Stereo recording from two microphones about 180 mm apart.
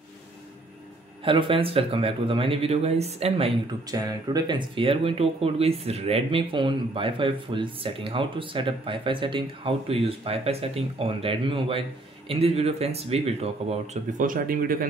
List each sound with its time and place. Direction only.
1.2 s speech: 30° right (ahead or behind)
3.9 s speech: 20° right (ahead or behind)
14.2 s speech: 50° right (ahead or behind)